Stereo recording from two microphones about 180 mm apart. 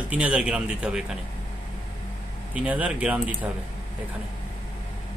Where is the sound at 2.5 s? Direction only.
10° right (ahead or behind).